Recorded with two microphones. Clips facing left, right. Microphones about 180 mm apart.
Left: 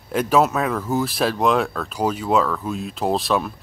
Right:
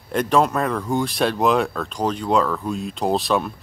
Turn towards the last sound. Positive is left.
turn(degrees=0)  # may be behind; listen again after turning